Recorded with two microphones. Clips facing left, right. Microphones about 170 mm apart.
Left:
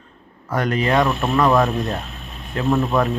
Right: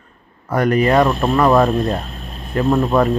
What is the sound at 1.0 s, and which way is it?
Speech, 30° right (ahead or behind).